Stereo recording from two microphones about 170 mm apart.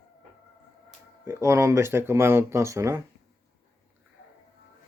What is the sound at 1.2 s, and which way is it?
Speech, 15° right (ahead or behind).